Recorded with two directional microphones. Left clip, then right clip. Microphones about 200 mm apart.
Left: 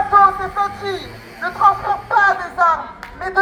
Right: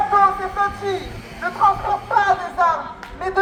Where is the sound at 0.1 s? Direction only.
5° right (ahead or behind).